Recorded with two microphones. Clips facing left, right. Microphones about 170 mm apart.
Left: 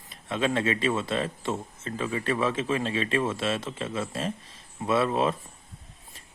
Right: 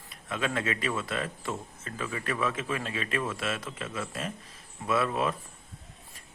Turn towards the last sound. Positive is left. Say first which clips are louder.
# left 4 dB
turn(degrees=25)  # may be behind; listen again after turning